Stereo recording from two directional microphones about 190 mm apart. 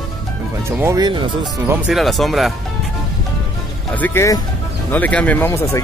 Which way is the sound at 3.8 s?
10° left (ahead or behind).